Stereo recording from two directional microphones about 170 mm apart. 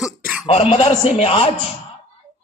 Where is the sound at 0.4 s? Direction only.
35° left (ahead or behind).